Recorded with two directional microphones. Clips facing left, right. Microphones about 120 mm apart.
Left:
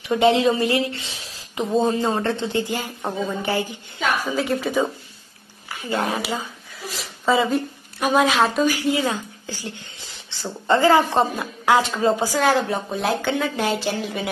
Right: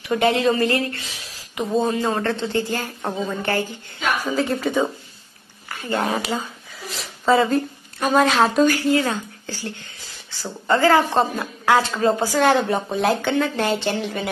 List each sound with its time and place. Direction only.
0.0 s a woman's voice: 25° left (ahead or behind)
0.9 s a sound: 25° left (ahead or behind)
1.8 s speech: 20° left (ahead or behind)
3.0 s a woman's voice: centre (ahead or behind)
3.4 s a woman's voice: 15° left (ahead or behind)
4.3 s a woman's voice: centre (ahead or behind)
5.9 s speech: centre (ahead or behind)
8.7 s a woman's voice: 15° left (ahead or behind)
12.4 s a woman's voice: centre (ahead or behind)